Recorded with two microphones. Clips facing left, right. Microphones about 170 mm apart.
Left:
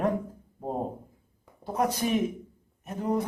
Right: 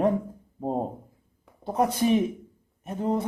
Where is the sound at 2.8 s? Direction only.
25° right (ahead or behind).